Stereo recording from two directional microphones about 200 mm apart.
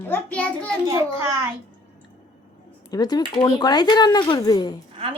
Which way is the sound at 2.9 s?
20° left (ahead or behind).